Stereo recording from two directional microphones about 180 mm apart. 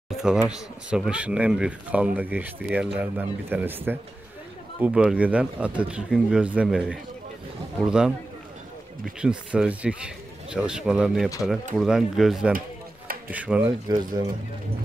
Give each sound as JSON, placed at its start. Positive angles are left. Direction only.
{"t": 0.2, "sound": "speech", "side_deg": -5}
{"t": 9.2, "sound": "speech", "side_deg": -5}
{"t": 13.7, "sound": "speech", "side_deg": -20}